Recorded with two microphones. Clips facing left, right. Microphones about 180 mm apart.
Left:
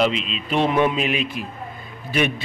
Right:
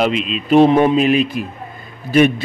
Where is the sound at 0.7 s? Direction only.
35° right (ahead or behind).